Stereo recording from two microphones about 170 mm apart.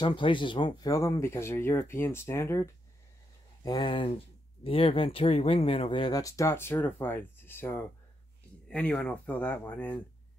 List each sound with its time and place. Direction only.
0.0 s speech: 30° left (ahead or behind); by 9.9 s 10° left (ahead or behind)